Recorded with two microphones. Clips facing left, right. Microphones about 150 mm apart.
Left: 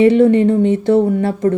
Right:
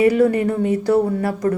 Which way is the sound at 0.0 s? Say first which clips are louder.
Left 5 dB; 25° left (ahead or behind).